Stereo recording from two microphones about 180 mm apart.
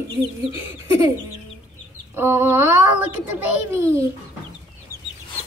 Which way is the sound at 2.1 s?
10° right (ahead or behind).